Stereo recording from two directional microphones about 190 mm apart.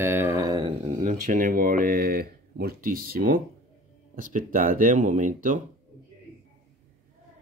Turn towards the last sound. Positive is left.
turn(degrees=-40)  # may be behind; listen again after turning